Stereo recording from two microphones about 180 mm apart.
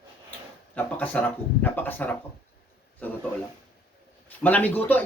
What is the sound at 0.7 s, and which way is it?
Speech, 10° left (ahead or behind).